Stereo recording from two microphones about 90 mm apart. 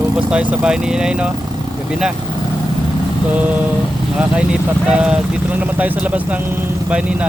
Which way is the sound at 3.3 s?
20° right (ahead or behind).